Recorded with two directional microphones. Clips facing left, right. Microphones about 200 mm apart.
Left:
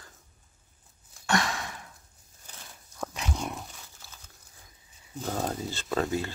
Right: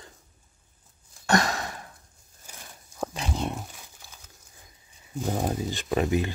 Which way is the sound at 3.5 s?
15° right (ahead or behind).